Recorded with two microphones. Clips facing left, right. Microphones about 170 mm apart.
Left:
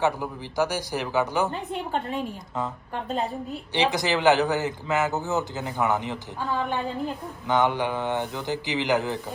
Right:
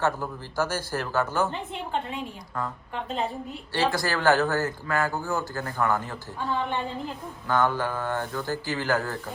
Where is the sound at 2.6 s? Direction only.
20° left (ahead or behind).